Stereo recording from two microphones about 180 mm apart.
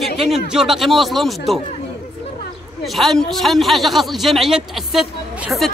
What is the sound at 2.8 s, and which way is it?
Speech, centre (ahead or behind).